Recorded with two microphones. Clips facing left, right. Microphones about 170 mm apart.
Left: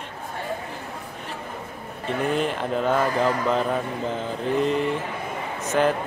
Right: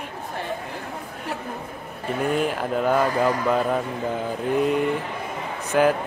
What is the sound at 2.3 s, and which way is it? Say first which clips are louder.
Speech: right 1 dB; 5° right (ahead or behind).